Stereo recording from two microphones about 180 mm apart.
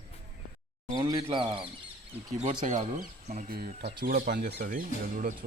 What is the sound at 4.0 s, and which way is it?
Speech, 55° right (ahead or behind).